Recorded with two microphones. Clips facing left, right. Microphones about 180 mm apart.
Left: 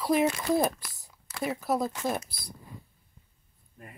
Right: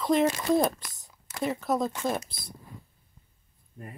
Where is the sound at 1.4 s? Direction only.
5° left (ahead or behind).